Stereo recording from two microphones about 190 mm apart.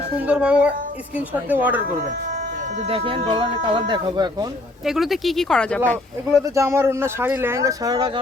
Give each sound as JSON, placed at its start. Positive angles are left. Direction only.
{"t": 0.3, "sound": "speech", "side_deg": -5}
{"t": 2.9, "sound": "speech", "side_deg": -30}
{"t": 4.9, "sound": "speech", "side_deg": 0}
{"t": 6.6, "sound": "speech", "side_deg": -15}